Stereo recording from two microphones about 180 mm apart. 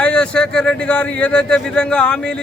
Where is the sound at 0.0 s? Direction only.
5° left (ahead or behind).